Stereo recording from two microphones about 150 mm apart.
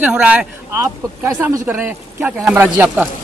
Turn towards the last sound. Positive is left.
turn(degrees=-10)  # may be behind; listen again after turning